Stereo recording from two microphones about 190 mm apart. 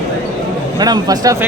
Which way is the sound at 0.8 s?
20° right (ahead or behind).